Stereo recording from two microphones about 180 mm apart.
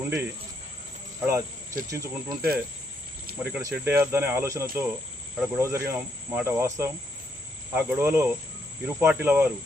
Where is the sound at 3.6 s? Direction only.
15° right (ahead or behind).